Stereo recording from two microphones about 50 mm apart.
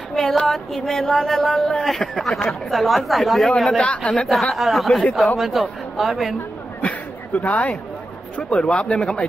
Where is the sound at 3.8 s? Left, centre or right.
Left.